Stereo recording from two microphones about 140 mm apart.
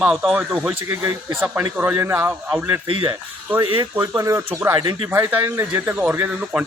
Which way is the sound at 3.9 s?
20° right (ahead or behind).